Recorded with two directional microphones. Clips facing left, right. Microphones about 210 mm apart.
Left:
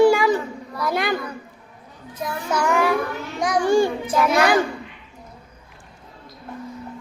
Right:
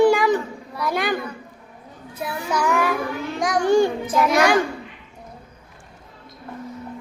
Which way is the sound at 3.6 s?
20° right (ahead or behind).